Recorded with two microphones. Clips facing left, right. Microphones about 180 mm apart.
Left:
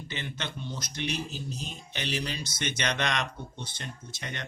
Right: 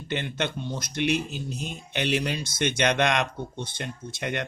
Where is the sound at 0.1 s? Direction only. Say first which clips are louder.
Right 10 dB; 55° right (ahead or behind).